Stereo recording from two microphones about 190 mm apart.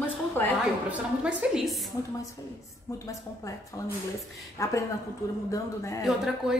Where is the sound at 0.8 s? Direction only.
5° right (ahead or behind).